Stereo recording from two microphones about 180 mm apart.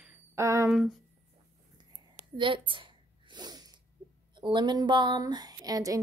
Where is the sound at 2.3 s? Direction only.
30° right (ahead or behind).